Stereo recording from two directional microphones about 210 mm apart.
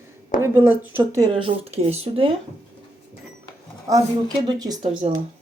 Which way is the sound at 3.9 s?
15° right (ahead or behind).